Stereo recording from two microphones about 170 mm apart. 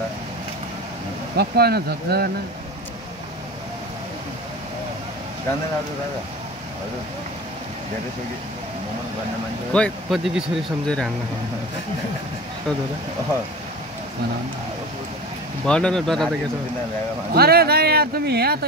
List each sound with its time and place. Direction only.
1.3 s speech: 65° right (ahead or behind)
9.7 s speech: 5° left (ahead or behind)
15.6 s speech: 5° left (ahead or behind)
17.3 s speech: 65° right (ahead or behind)